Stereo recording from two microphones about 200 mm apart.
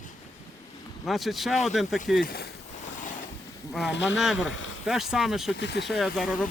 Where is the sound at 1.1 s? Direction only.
Centre (ahead or behind).